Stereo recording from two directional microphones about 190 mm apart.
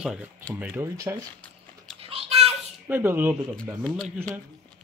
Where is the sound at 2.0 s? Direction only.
30° right (ahead or behind).